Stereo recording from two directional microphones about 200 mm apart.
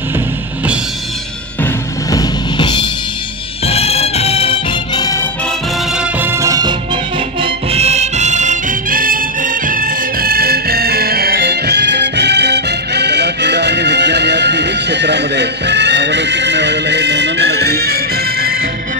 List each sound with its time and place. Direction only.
1.6 s music: 20° left (ahead or behind)
5.9 s music: 10° right (ahead or behind)
7.4 s music: 30° right (ahead or behind); by 18.7 s 50° right (ahead or behind)